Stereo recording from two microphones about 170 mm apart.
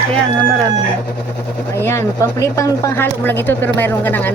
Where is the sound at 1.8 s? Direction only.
15° left (ahead or behind).